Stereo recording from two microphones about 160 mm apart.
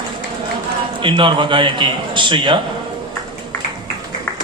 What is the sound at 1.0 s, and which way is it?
A man's voice, 30° right (ahead or behind).